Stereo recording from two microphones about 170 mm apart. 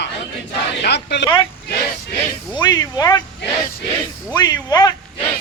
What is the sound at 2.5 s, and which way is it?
Speech, 25° left (ahead or behind).